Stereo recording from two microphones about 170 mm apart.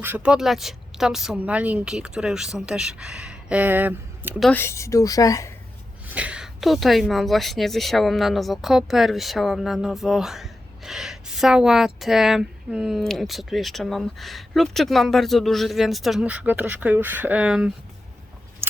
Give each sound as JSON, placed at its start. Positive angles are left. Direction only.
{"t": 0.0, "sound": "a woman's voice", "side_deg": -10}
{"t": 4.5, "sound": "a woman's voice", "side_deg": 15}
{"t": 6.1, "sound": "a woman's voice", "side_deg": -10}